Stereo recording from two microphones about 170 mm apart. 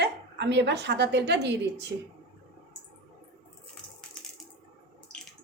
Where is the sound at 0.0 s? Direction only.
90° right.